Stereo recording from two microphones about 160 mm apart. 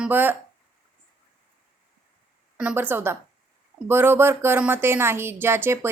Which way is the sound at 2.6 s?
10° right (ahead or behind).